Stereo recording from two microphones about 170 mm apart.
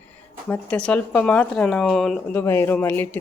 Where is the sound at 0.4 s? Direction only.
5° left (ahead or behind).